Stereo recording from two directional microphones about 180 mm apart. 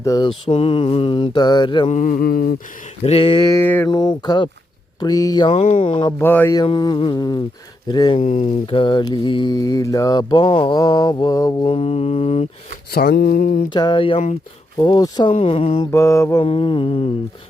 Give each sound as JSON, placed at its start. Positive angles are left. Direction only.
{"t": 0.0, "sound": "mantra", "side_deg": 20}
{"t": 0.3, "sound": "mantra", "side_deg": 30}
{"t": 1.9, "sound": "mantra", "side_deg": 45}
{"t": 3.0, "sound": "mantra", "side_deg": 30}
{"t": 6.2, "sound": "mantra", "side_deg": 10}
{"t": 6.6, "sound": "mantra", "side_deg": 25}
{"t": 8.2, "sound": "mantra", "side_deg": 35}
{"t": 11.7, "sound": "mantra", "side_deg": 35}
{"t": 12.9, "sound": "mantra", "side_deg": 55}
{"t": 13.7, "sound": "mantra", "side_deg": 25}
{"t": 15.9, "sound": "mantra", "side_deg": 15}
{"t": 16.4, "sound": "mantra", "side_deg": 30}